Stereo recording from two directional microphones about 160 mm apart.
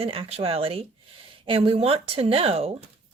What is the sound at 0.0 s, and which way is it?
Speech, 35° right (ahead or behind).